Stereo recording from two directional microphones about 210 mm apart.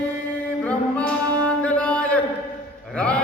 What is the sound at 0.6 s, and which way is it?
Music, 5° left (ahead or behind).